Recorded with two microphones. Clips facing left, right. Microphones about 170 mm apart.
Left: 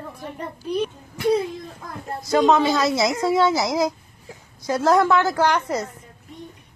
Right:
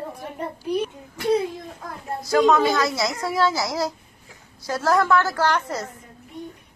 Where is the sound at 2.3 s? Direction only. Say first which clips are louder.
Even; 20° left (ahead or behind).